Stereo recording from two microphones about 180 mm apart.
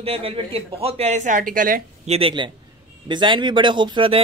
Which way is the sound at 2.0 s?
30° right (ahead or behind).